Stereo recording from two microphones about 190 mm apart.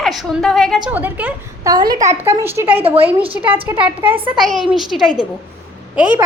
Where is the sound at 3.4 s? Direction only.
30° left (ahead or behind).